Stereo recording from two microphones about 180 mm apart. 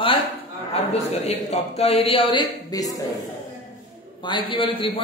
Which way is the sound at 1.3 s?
40° left (ahead or behind).